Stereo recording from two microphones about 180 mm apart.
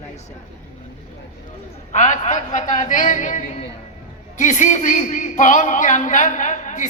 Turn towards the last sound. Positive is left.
turn(degrees=45)  # may be behind; listen again after turning